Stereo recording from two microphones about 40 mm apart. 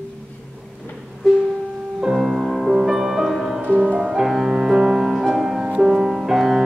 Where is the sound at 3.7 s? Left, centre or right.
Right.